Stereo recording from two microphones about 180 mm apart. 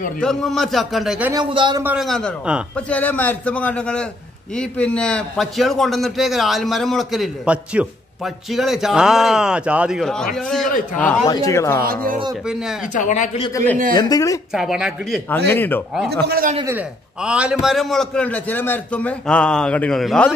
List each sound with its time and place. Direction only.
0.2 s a man's voice: centre (ahead or behind)
1.3 s a man's voice: 25° right (ahead or behind)
1.8 s a man's voice: 10° right (ahead or behind)
2.0 s a man's voice: centre (ahead or behind)
2.9 s a man's voice: 10° left (ahead or behind)
11.2 s a man's voice: 20° left (ahead or behind)
11.8 s speech: 50° right (ahead or behind)
12.9 s speech: 45° left (ahead or behind)
13.9 s speech: 20° left (ahead or behind)
14.5 s a man's voice: 5° right (ahead or behind)
15.2 s a man's voice: 10° left (ahead or behind)
16.3 s speech: 55° right (ahead or behind)
16.6 s a man's voice: 10° right (ahead or behind)